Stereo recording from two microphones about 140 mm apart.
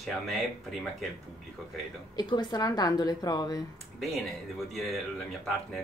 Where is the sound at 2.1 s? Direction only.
30° left (ahead or behind).